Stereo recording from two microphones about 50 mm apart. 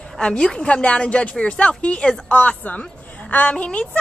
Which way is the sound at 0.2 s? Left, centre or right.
Centre.